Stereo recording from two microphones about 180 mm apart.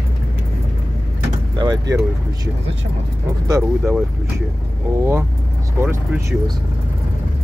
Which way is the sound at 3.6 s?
Centre (ahead or behind).